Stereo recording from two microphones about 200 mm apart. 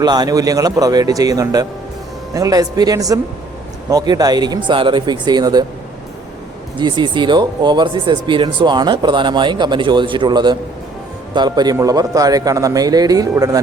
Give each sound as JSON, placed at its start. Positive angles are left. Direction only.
{"t": 0.0, "sound": "a man's voice", "side_deg": -20}
{"t": 6.7, "sound": "a man's voice", "side_deg": -25}